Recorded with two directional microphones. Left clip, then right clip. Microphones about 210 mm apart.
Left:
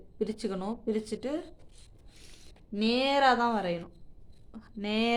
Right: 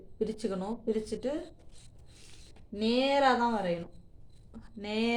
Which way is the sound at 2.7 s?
35° left (ahead or behind).